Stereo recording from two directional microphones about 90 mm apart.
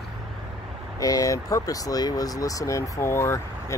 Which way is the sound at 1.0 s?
40° left (ahead or behind).